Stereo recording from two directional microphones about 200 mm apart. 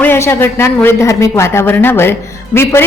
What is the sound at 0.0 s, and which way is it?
A woman's voice, 10° left (ahead or behind).